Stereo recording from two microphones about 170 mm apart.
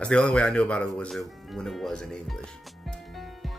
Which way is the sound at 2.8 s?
Centre (ahead or behind).